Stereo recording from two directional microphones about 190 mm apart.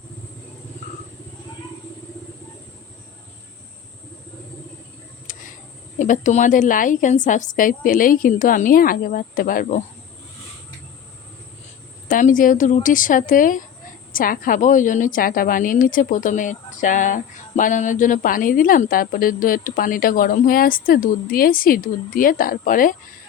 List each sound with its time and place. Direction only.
5.3 s a sound: 45° left (ahead or behind)
6.0 s speech: 40° left (ahead or behind)
12.0 s speech: 45° left (ahead or behind)